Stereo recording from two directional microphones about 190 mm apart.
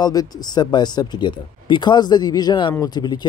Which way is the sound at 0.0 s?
20° left (ahead or behind).